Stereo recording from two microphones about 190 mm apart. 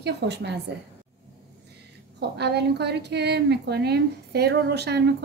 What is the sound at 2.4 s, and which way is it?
A woman's voice, 60° right (ahead or behind).